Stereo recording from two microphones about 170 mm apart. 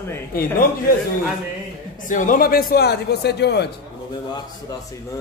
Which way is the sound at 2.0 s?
50° left (ahead or behind).